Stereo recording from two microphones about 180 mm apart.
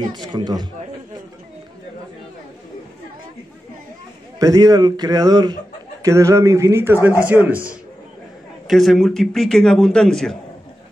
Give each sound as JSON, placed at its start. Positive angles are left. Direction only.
{"t": 0.1, "sound": "a man's voice", "side_deg": -25}
{"t": 4.4, "sound": "a man's voice", "side_deg": -20}
{"t": 8.6, "sound": "a man's voice", "side_deg": 0}